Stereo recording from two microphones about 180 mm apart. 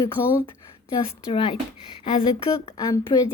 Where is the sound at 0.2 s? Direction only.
55° left (ahead or behind).